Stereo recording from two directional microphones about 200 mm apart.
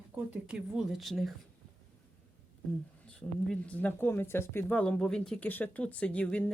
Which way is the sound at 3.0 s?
5° left (ahead or behind).